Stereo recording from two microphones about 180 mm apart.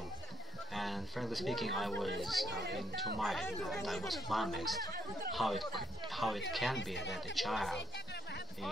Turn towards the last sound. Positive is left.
turn(degrees=0)  # may be behind; listen again after turning